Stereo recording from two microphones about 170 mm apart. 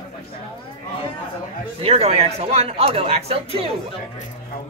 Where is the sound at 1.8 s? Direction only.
35° right (ahead or behind).